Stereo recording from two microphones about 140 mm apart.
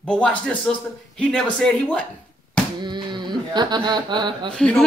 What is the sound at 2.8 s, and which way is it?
Speech, 30° right (ahead or behind).